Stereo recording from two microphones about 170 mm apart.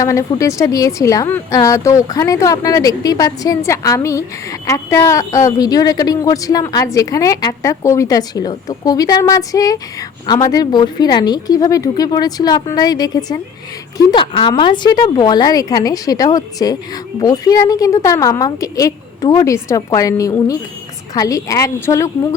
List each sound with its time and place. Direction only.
0.0 s speech: 20° left (ahead or behind)